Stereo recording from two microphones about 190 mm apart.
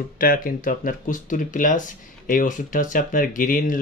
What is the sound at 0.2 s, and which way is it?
Speech, 50° left (ahead or behind).